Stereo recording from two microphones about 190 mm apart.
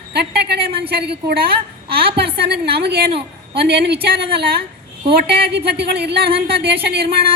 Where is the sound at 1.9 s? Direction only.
30° right (ahead or behind).